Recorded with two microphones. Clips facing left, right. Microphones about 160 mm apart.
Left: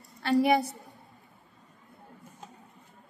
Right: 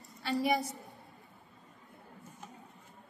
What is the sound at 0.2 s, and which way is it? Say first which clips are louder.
Speech: left 7 dB; 65° left (ahead or behind).